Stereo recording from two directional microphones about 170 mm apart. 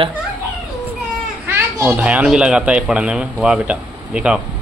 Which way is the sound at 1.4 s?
15° right (ahead or behind).